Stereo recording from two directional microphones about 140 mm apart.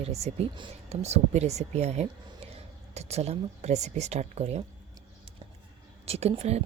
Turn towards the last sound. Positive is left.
turn(degrees=-50)  # may be behind; listen again after turning